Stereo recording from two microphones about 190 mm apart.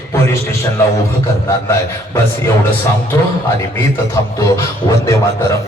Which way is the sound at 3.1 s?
15° left (ahead or behind).